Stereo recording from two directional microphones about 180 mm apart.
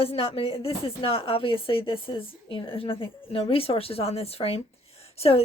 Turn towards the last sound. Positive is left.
turn(degrees=35)  # may be behind; listen again after turning